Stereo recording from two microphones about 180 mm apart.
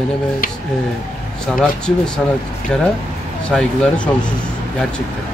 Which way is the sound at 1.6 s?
5° left (ahead or behind).